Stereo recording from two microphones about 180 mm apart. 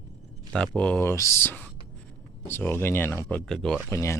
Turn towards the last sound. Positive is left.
turn(degrees=15)  # may be behind; listen again after turning